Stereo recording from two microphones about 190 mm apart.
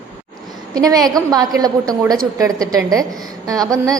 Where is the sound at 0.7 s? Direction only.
20° right (ahead or behind).